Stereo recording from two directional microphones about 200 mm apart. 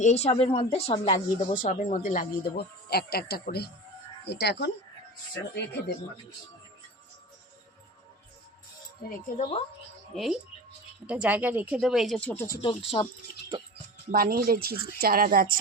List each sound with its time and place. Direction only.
0.0 s speech: 35° left (ahead or behind)
1.6 s speech: 40° left (ahead or behind); by 4.7 s 60° left (ahead or behind)
9.0 s speech: 40° left (ahead or behind)
10.1 s speech: 5° left (ahead or behind)
11.0 s speech: 5° right (ahead or behind); by 12.5 s 10° left (ahead or behind)
12.6 s speech: 25° left (ahead or behind)
14.1 s speech: 45° right (ahead or behind)